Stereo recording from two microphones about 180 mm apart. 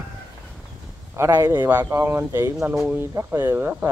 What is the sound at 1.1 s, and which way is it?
Speech, 15° right (ahead or behind).